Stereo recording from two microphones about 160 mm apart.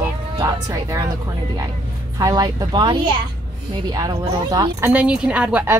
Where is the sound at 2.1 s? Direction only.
25° right (ahead or behind).